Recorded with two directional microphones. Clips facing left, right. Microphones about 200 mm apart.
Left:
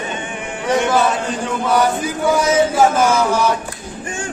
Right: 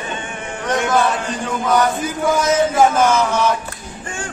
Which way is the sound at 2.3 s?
10° left (ahead or behind).